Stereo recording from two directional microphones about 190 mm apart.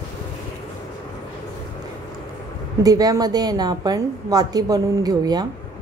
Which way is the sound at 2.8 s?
20° right (ahead or behind).